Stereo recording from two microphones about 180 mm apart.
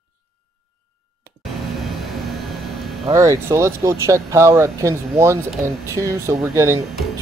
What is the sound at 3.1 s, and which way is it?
Speech, 15° right (ahead or behind).